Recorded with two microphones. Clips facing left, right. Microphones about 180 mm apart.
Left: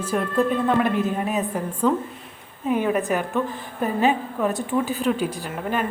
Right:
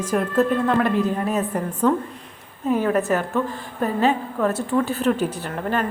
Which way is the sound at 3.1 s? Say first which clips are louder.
Right 2 dB; 10° left (ahead or behind).